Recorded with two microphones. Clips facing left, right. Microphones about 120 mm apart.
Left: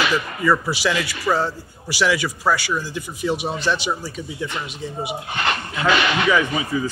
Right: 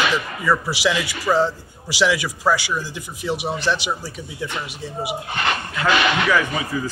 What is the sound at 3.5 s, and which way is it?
Speech, 15° left (ahead or behind).